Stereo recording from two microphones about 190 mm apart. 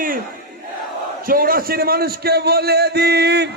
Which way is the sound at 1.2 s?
50° right (ahead or behind).